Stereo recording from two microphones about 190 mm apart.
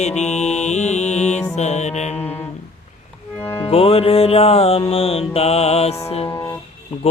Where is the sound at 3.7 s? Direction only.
30° left (ahead or behind).